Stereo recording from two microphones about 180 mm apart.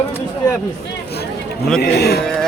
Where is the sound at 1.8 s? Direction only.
65° left (ahead or behind).